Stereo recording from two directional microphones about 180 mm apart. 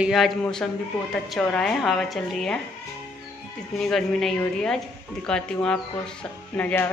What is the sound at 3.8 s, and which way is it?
Speech, centre (ahead or behind).